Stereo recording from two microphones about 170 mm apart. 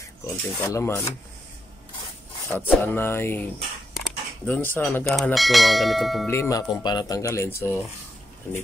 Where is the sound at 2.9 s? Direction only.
15° left (ahead or behind).